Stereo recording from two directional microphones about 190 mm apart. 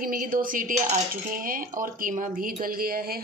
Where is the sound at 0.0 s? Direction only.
45° right (ahead or behind).